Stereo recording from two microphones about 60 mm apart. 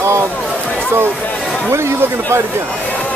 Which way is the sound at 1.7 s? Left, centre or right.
Right.